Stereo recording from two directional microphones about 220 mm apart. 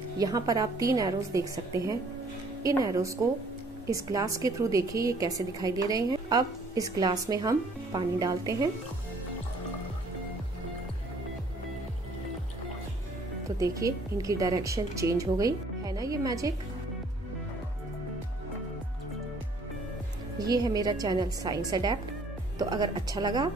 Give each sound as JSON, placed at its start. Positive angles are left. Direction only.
{"t": 0.2, "sound": "a woman's voice", "side_deg": -15}
{"t": 13.6, "sound": "a woman's voice", "side_deg": -15}
{"t": 20.3, "sound": "a woman's voice", "side_deg": -15}